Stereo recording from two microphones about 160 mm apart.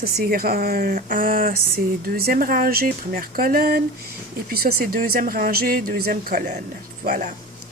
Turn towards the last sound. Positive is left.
turn(degrees=-60)  # may be behind; listen again after turning